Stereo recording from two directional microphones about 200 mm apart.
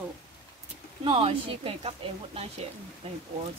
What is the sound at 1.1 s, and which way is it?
Speech, 25° right (ahead or behind).